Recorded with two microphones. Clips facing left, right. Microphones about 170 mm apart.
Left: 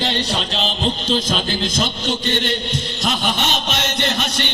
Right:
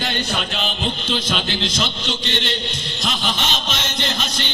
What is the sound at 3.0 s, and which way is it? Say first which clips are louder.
Music: left 2 dB; 55° left (ahead or behind).